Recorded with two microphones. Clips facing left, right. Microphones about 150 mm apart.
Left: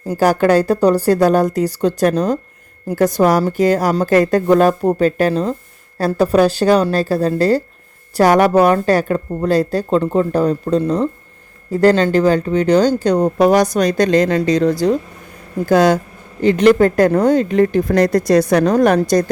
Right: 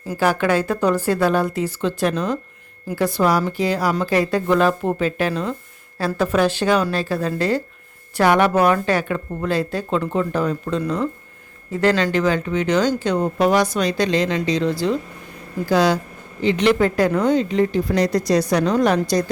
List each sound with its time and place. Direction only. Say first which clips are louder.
0.1 s a woman's voice: left 6 dB; 40° left (ahead or behind)